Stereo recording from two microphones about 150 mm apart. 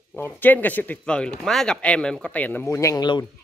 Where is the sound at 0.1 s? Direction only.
10° left (ahead or behind).